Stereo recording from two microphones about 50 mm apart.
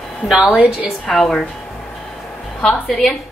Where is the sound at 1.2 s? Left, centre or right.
Centre.